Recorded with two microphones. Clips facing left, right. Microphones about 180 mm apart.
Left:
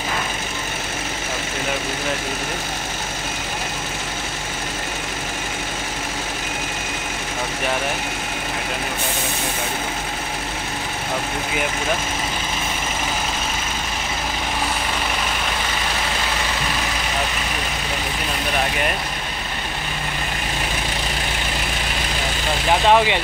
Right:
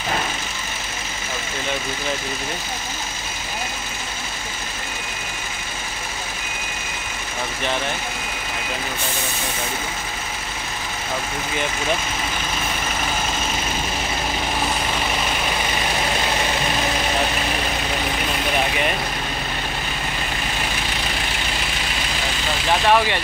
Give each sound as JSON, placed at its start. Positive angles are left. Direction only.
{"t": 22.7, "sound": "speech", "side_deg": 15}